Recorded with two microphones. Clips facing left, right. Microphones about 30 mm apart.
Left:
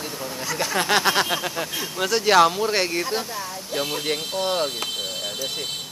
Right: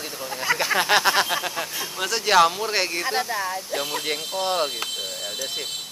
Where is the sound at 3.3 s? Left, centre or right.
Right.